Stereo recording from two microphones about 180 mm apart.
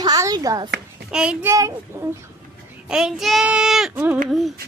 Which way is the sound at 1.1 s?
5° right (ahead or behind).